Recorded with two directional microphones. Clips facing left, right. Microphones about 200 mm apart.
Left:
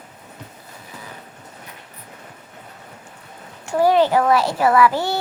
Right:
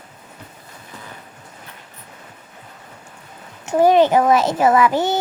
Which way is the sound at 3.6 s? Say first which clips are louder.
Right 3 dB; 20° right (ahead or behind).